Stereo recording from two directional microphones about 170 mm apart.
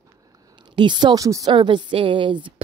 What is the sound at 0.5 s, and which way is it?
Speech, 25° right (ahead or behind).